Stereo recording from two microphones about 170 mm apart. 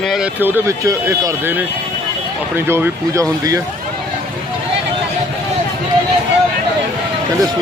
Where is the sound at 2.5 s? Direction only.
15° right (ahead or behind).